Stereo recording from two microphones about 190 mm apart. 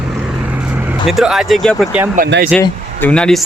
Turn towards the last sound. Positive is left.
turn(degrees=5)  # may be behind; listen again after turning